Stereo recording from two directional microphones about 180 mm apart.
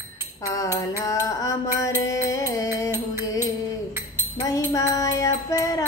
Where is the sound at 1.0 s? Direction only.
20° left (ahead or behind).